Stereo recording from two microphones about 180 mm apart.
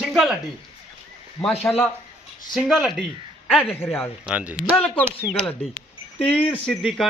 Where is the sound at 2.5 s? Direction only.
5° right (ahead or behind).